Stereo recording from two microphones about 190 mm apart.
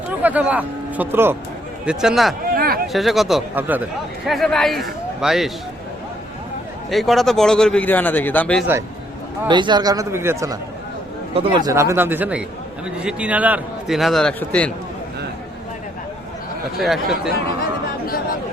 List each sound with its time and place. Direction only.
0.2 s a man's voice: 10° right (ahead or behind)
2.6 s a sound: 50° right (ahead or behind)
2.8 s a man's voice: centre (ahead or behind)
4.3 s a man's voice: centre (ahead or behind)
6.9 s a man's voice: centre (ahead or behind)
9.5 s a man's voice: 25° right (ahead or behind); by 14.7 s 5° left (ahead or behind)
16.8 s a man's voice: centre (ahead or behind)